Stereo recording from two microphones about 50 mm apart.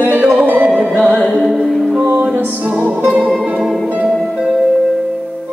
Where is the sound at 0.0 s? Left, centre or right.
Right.